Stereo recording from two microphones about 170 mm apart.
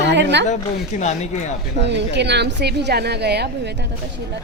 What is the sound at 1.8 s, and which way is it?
A woman's voice, 90° right.